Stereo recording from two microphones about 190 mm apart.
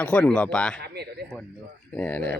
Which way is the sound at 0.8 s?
60° right (ahead or behind).